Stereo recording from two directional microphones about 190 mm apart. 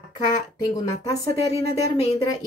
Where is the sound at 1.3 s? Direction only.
30° left (ahead or behind).